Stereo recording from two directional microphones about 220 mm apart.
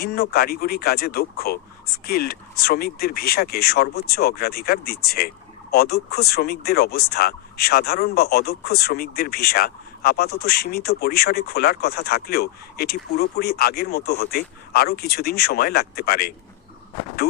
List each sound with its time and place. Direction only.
0.0 s speech: 45° left (ahead or behind)